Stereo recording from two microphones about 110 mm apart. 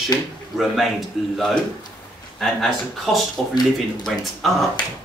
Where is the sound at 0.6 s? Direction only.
Centre (ahead or behind).